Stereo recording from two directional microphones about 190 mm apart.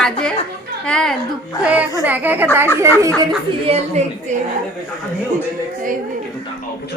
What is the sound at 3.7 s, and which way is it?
Speech, 35° right (ahead or behind).